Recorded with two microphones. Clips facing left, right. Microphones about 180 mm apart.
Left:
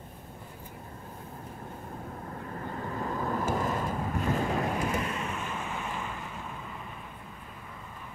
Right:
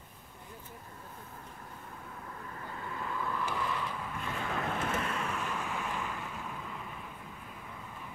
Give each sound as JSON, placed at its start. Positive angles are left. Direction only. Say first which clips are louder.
{"t": 2.2, "sound": "vehicle", "louder": "left 6 dB", "side_deg": 40}
{"t": 4.6, "sound": "boat", "louder": "left 4 dB", "side_deg": 10}